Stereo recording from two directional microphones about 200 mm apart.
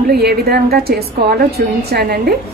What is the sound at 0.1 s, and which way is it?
A woman's voice, 50° right (ahead or behind).